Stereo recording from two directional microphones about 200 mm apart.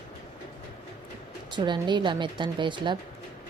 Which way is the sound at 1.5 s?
25° right (ahead or behind).